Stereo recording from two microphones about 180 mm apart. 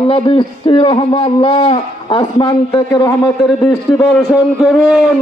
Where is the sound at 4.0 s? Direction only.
Centre (ahead or behind).